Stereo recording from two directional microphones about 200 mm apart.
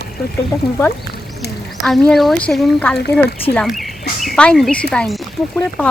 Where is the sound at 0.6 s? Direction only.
55° left (ahead or behind).